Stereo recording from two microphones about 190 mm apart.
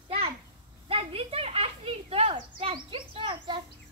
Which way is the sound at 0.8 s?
30° right (ahead or behind).